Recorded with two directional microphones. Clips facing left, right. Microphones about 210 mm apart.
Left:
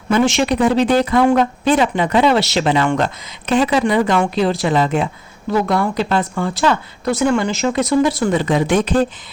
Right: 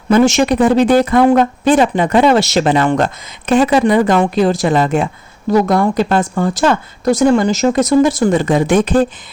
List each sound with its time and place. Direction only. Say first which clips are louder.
0.1 s speech: right 4 dB; 45° right (ahead or behind)